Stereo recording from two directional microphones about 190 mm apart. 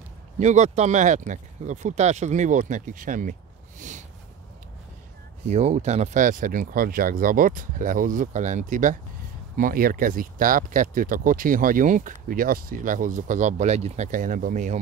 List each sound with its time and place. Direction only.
0.4 s speech: 35° right (ahead or behind)
5.5 s speech: 35° right (ahead or behind)